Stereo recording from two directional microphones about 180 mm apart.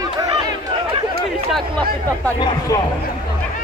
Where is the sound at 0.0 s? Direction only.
25° right (ahead or behind).